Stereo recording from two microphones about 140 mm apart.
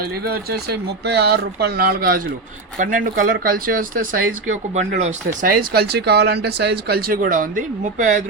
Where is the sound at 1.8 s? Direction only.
90° right.